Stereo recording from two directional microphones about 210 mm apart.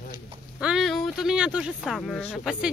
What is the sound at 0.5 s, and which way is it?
Speech, centre (ahead or behind).